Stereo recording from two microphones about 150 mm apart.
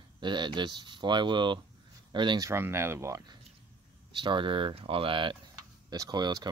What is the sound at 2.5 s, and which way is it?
Speech, 15° right (ahead or behind).